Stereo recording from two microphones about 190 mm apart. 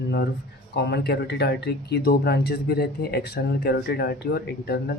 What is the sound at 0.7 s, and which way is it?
Speech, 60° left (ahead or behind).